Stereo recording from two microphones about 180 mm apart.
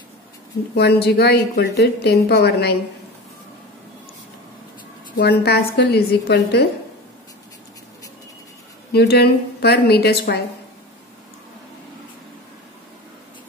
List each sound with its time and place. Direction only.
0.7 s a woman's voice: 65° left (ahead or behind)
5.4 s a woman's voice: 65° left (ahead or behind)
8.9 s a woman's voice: 60° left (ahead or behind)